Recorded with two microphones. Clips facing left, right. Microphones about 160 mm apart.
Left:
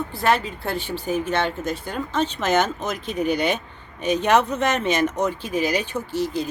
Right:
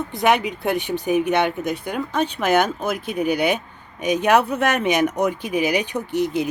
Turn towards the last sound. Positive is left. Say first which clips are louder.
# right 3 dB
turn(degrees=-15)  # may be behind; listen again after turning